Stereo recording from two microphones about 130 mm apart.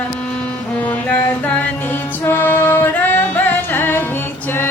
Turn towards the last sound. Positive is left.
turn(degrees=15)  # may be behind; listen again after turning